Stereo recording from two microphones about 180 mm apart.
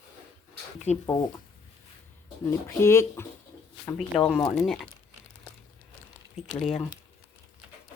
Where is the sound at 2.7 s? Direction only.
15° left (ahead or behind).